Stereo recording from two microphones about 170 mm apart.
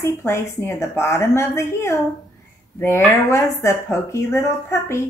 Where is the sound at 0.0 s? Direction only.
15° left (ahead or behind).